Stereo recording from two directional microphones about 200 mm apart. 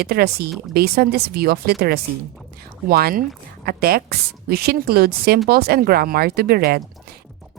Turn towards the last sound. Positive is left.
turn(degrees=-50)  # may be behind; listen again after turning